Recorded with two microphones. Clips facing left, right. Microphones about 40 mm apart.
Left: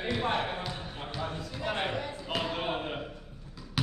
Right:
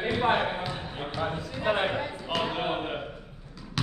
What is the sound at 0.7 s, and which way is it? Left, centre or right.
Basketball bounce, right.